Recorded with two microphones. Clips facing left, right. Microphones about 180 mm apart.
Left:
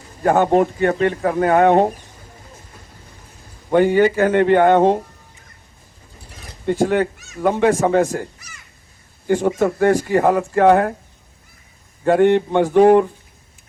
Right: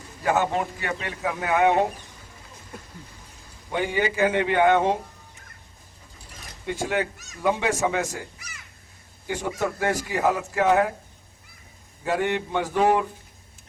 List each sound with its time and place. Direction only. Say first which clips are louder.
0.2 s speech: left 9 dB; 45° left (ahead or behind)
3.7 s speech: left 11 dB; 50° left (ahead or behind)
6.7 s a man's voice: left 9 dB; 50° left (ahead or behind)
12.0 s speech: left 11 dB; 55° left (ahead or behind)